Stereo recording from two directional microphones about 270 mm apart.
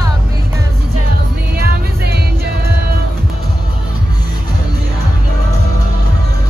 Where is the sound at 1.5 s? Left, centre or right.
Right.